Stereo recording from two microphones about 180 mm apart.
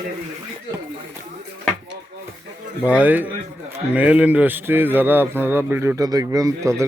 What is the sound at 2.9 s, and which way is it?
Speech, 10° right (ahead or behind).